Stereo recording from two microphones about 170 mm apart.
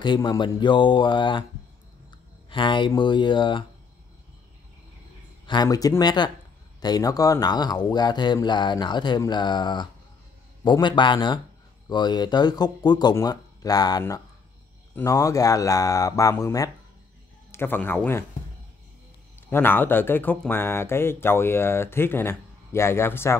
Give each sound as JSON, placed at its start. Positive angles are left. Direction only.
{"t": 0.0, "sound": "speech", "side_deg": 25}
{"t": 5.5, "sound": "speech", "side_deg": 25}
{"t": 19.5, "sound": "speech", "side_deg": 10}